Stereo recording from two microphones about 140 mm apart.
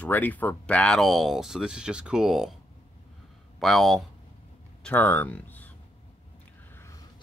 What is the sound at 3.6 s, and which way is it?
Speech, centre (ahead or behind).